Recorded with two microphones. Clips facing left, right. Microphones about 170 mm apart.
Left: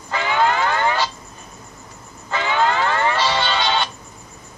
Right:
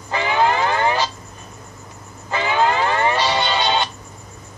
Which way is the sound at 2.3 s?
15° right (ahead or behind).